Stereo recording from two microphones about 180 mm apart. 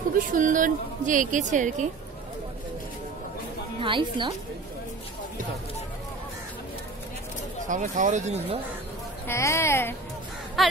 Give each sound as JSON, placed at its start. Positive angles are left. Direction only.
{"t": 0.3, "sound": "a woman's voice", "side_deg": -45}
{"t": 3.8, "sound": "a woman's voice", "side_deg": -30}
{"t": 7.6, "sound": "a woman's voice", "side_deg": -45}
{"t": 9.3, "sound": "a woman's voice", "side_deg": 15}
{"t": 10.6, "sound": "a sound", "side_deg": 0}